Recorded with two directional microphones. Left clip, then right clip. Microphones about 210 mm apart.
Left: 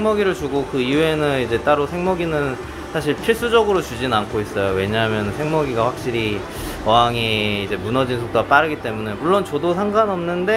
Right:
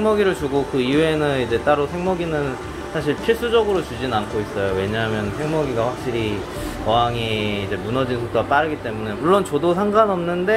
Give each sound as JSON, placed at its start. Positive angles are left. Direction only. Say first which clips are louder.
{"t": 0.0, "sound": "speech", "louder": "even", "side_deg": 0}
{"t": 9.2, "sound": "speech", "louder": "right 1 dB", "side_deg": -5}